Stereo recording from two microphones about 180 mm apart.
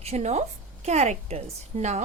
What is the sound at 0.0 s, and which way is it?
A woman's voice, 35° right (ahead or behind).